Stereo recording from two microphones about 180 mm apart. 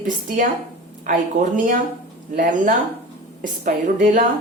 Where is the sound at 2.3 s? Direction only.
45° right (ahead or behind).